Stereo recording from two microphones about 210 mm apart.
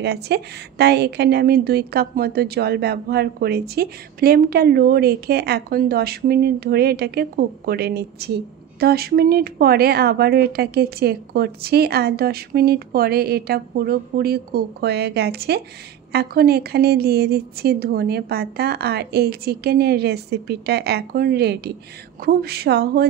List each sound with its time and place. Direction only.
0.0 s a woman's voice: 50° right (ahead or behind)